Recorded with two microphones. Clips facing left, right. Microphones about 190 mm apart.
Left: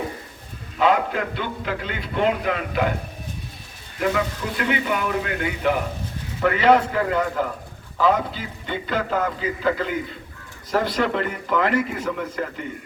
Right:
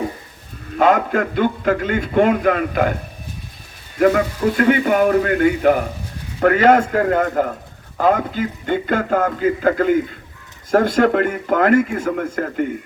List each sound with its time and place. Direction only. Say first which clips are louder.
0.8 s a man's voice: right 5 dB; 50° right (ahead or behind)
4.0 s a man's voice: right 8 dB; 50° right (ahead or behind)